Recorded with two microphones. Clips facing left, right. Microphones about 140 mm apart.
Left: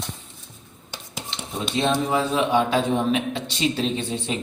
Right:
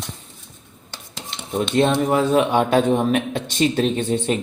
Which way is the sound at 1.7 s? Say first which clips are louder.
Right 4 dB; 55° right (ahead or behind).